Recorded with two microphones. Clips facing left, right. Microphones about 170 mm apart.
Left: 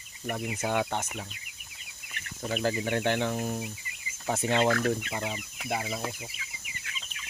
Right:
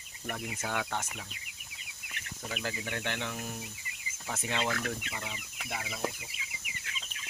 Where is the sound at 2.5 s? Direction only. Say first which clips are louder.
Left 9 dB; 35° left (ahead or behind).